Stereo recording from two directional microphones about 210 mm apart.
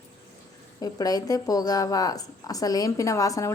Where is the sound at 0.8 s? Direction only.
15° left (ahead or behind).